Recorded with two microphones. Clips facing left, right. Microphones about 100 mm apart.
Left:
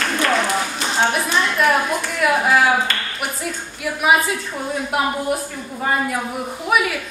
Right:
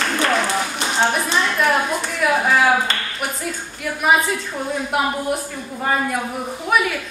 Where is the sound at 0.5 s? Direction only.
Centre (ahead or behind).